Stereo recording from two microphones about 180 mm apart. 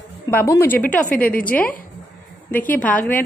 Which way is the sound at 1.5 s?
10° left (ahead or behind).